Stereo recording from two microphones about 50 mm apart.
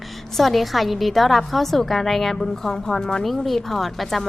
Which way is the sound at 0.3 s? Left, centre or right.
Centre.